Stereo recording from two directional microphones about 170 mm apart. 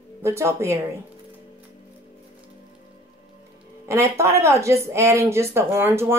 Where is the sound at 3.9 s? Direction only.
15° right (ahead or behind).